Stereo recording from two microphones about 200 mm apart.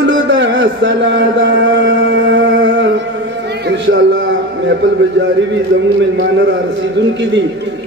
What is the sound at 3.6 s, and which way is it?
Music, 60° right (ahead or behind).